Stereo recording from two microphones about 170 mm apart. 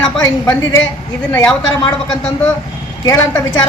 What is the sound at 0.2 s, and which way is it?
A woman's voice, 20° left (ahead or behind).